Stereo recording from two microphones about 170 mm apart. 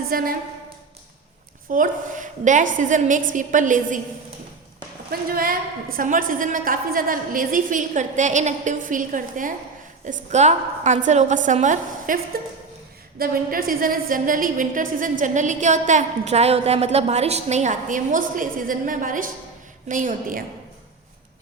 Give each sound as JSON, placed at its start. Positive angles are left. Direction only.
{"t": 0.1, "sound": "a woman's voice", "side_deg": -60}
{"t": 1.7, "sound": "a woman's voice", "side_deg": -50}
{"t": 5.3, "sound": "a woman's voice", "side_deg": -60}